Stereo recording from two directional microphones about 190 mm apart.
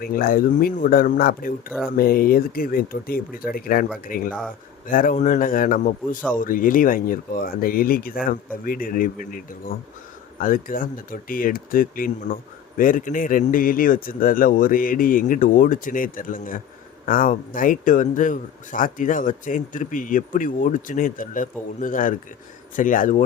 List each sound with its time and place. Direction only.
0.0 s speech: 50° left (ahead or behind)